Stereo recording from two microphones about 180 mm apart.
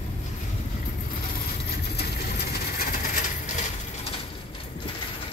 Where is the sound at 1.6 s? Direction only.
65° left (ahead or behind).